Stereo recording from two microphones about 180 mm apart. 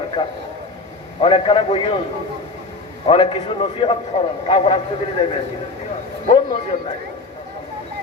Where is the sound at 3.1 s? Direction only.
30° left (ahead or behind).